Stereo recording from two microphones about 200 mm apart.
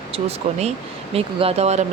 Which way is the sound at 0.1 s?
30° right (ahead or behind).